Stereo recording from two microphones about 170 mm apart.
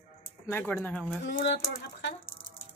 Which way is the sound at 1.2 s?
90° left.